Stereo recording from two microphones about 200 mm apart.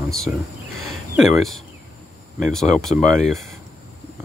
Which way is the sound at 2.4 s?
Centre (ahead or behind).